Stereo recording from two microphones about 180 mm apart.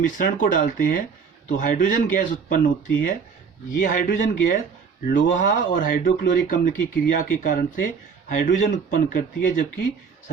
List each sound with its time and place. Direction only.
0.0 s speech: 45° left (ahead or behind)